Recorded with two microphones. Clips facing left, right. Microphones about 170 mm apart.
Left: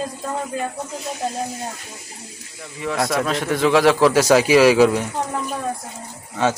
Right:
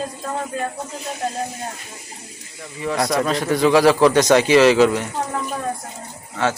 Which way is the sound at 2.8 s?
Centre (ahead or behind).